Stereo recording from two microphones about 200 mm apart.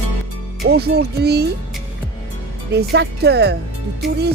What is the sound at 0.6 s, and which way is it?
Speech, 55° right (ahead or behind).